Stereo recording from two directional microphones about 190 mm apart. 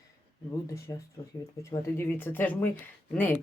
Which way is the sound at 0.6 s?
15° left (ahead or behind).